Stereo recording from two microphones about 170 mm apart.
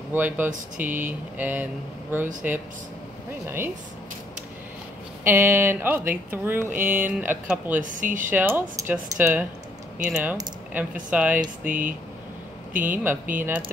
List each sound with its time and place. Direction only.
0.1 s speech: 10° right (ahead or behind)
5.2 s speech: 10° right (ahead or behind)
7.8 s speech: 50° right (ahead or behind)
8.3 s speech: 10° right (ahead or behind)
10.8 s speech: 10° right (ahead or behind)